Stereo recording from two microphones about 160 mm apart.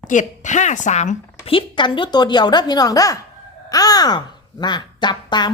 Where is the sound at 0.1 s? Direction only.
50° left (ahead or behind).